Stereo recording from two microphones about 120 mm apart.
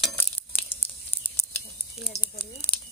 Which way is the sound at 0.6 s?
50° left (ahead or behind).